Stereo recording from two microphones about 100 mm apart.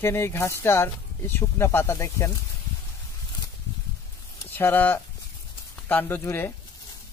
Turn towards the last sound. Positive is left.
turn(degrees=20)  # may be behind; listen again after turning